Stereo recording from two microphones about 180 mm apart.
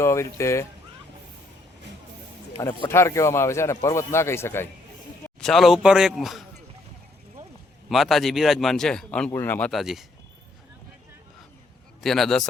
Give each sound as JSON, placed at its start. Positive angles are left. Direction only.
{"t": 0.0, "sound": "speech", "side_deg": 15}
{"t": 2.6, "sound": "speech", "side_deg": 15}
{"t": 5.4, "sound": "speech", "side_deg": 0}
{"t": 7.9, "sound": "speech", "side_deg": 0}
{"t": 12.0, "sound": "speech", "side_deg": 0}